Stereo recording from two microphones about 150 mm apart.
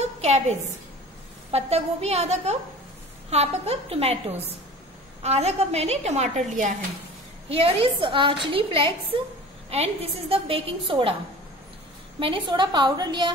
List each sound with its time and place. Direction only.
0.0 s a sound: 50° right (ahead or behind)
1.5 s a woman's voice: 45° right (ahead or behind)
7.4 s a woman's voice: 40° right (ahead or behind)
12.2 s a woman's voice: 35° right (ahead or behind)